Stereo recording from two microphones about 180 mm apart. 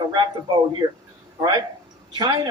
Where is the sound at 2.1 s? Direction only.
25° right (ahead or behind).